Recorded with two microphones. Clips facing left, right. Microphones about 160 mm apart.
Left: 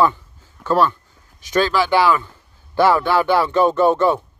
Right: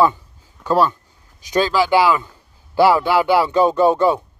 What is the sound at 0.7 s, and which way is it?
Speech, 15° right (ahead or behind).